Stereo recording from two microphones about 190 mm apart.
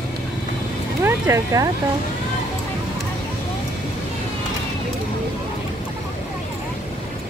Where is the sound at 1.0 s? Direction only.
15° right (ahead or behind).